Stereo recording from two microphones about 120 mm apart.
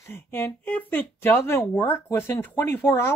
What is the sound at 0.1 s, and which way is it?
Speech, 20° left (ahead or behind).